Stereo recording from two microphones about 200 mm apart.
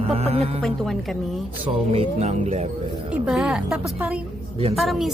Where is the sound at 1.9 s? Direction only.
30° right (ahead or behind).